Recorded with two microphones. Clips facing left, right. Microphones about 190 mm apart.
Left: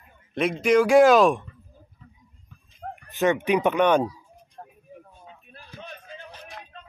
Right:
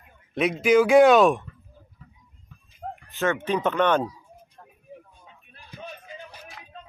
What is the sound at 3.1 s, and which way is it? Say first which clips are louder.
Speech: left 3 dB; 15° left (ahead or behind).